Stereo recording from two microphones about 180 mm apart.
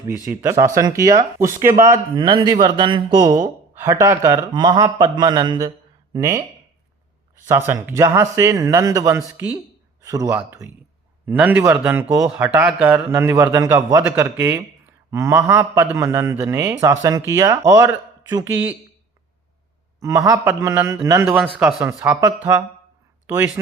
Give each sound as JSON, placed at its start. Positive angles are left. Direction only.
{"t": 0.3, "sound": "a man's voice", "side_deg": -15}
{"t": 7.7, "sound": "a man's voice", "side_deg": -15}
{"t": 20.0, "sound": "a man's voice", "side_deg": -15}
{"t": 21.3, "sound": "a man's voice", "side_deg": -5}
{"t": 21.8, "sound": "a man's voice", "side_deg": -15}